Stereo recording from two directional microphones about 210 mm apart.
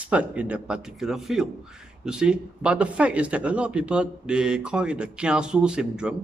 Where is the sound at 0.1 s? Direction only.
5° right (ahead or behind).